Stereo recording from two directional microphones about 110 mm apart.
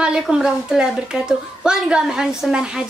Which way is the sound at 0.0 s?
5° right (ahead or behind).